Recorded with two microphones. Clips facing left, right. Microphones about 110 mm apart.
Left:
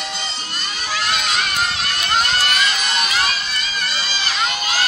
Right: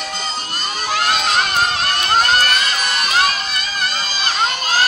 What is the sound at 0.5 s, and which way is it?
Crowd, 45° right (ahead or behind).